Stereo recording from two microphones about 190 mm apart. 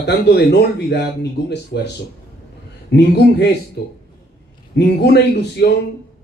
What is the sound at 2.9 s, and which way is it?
Speech, 60° left (ahead or behind).